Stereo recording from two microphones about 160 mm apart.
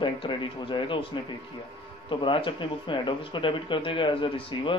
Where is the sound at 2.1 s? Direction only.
30° left (ahead or behind).